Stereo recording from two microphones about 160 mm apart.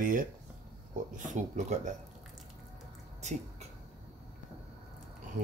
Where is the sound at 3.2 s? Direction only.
45° right (ahead or behind).